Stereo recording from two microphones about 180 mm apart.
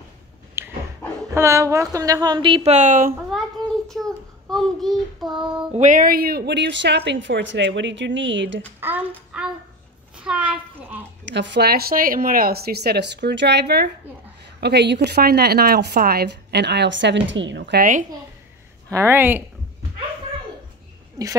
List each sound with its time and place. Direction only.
0.6 s dog: 15° right (ahead or behind)
1.3 s a woman's voice: 15° right (ahead or behind); by 3.2 s 50° right (ahead or behind)
3.9 s child singing: centre (ahead or behind)
5.7 s a woman's voice: 40° right (ahead or behind); by 8.6 s 90° right
10.1 s a child's voice: 5° right (ahead or behind)
11.2 s a woman's voice: 80° right
18.9 s speech: 15° right (ahead or behind)
21.2 s a woman's voice: 20° right (ahead or behind)